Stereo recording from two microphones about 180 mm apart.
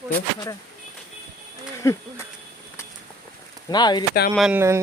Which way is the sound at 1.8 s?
15° left (ahead or behind).